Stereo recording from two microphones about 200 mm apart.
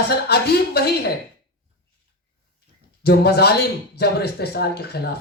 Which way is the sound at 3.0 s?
55° left (ahead or behind).